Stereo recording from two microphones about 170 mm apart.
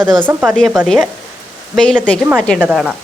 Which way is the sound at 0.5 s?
5° left (ahead or behind).